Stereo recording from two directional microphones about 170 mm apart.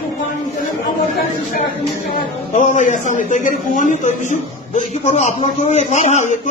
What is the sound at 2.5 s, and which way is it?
A man's voice, 45° left (ahead or behind).